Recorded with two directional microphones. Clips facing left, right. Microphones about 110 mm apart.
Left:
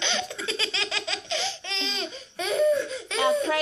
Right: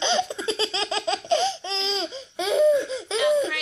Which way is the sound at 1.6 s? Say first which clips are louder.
Right 5 dB; 30° right (ahead or behind).